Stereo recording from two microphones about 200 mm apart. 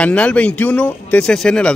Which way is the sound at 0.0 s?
5° left (ahead or behind).